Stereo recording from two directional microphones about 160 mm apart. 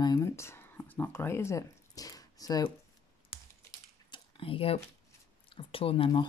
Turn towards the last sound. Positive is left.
turn(degrees=35)  # may be behind; listen again after turning